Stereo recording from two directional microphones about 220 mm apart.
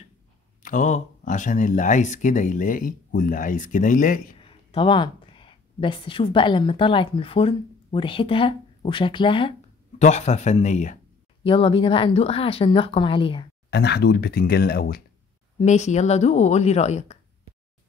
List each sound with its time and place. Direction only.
0.6 s speech: 35° left (ahead or behind)
4.4 s a woman's voice: 25° left (ahead or behind)
13.7 s speech: 50° left (ahead or behind)
15.6 s speech: 30° left (ahead or behind)